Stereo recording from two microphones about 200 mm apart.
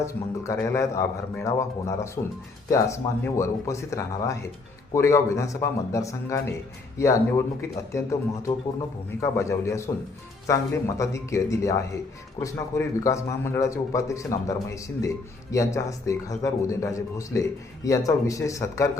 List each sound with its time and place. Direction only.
0.0 s speech: 15° left (ahead or behind)